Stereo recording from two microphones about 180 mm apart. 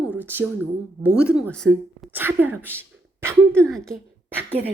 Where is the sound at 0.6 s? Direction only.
10° left (ahead or behind).